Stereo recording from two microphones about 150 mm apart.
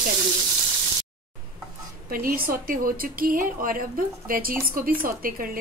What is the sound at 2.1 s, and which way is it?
A woman's voice, 75° right (ahead or behind).